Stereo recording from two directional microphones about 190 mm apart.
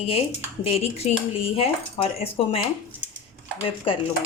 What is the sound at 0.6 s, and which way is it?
Speech, 30° left (ahead or behind).